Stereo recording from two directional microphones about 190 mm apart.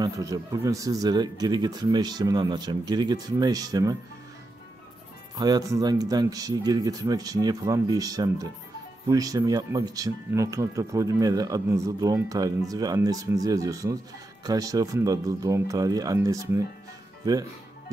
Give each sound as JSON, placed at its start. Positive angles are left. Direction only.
{"t": 0.0, "sound": "speech", "side_deg": -20}
{"t": 5.3, "sound": "speech", "side_deg": -20}